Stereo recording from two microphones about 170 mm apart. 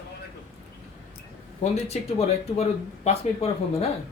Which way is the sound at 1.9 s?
40° left (ahead or behind).